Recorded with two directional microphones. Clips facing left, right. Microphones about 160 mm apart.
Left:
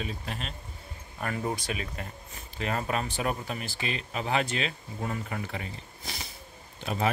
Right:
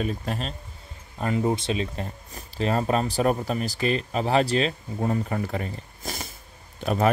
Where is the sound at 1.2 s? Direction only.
25° right (ahead or behind).